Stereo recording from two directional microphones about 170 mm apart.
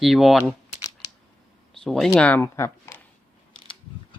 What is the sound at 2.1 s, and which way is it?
Speech, 10° left (ahead or behind).